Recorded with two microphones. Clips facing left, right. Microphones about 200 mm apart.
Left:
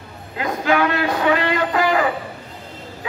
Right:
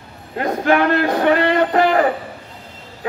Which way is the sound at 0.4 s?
50° right (ahead or behind).